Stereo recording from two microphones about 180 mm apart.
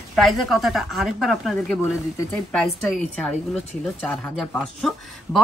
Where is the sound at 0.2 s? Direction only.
Centre (ahead or behind).